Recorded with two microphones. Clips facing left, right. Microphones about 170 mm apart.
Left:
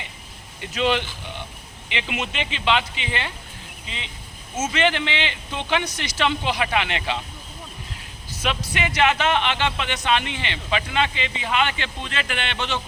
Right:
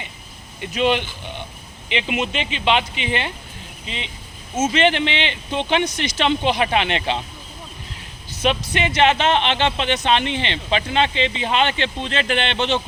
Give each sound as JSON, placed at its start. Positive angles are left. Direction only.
{"t": 0.7, "sound": "speech", "side_deg": -15}
{"t": 8.4, "sound": "speech", "side_deg": -25}